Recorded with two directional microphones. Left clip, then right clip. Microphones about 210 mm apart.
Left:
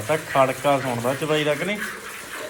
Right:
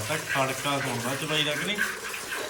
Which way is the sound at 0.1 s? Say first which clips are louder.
Left 8 dB; 5° right (ahead or behind).